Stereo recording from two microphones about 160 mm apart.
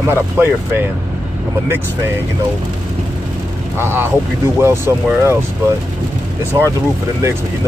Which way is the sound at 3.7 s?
15° right (ahead or behind).